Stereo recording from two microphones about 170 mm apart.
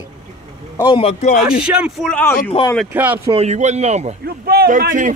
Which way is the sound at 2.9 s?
10° right (ahead or behind).